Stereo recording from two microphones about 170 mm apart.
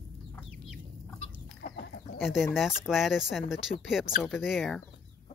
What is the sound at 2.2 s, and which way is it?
Speech, 5° right (ahead or behind).